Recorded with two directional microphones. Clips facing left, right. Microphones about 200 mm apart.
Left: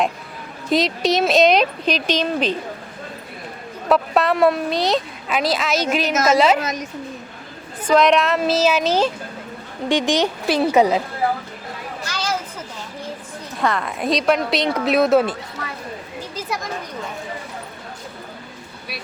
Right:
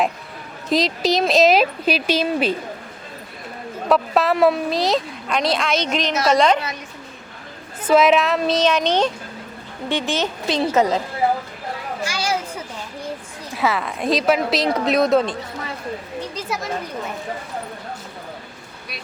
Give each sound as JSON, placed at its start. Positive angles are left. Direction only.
{"t": 0.7, "sound": "speech", "side_deg": 0}
{"t": 3.8, "sound": "speech", "side_deg": 0}
{"t": 6.6, "sound": "a woman's voice", "side_deg": 45}
{"t": 7.9, "sound": "speech", "side_deg": -5}
{"t": 12.0, "sound": "children playing", "side_deg": -10}
{"t": 13.6, "sound": "speech", "side_deg": -5}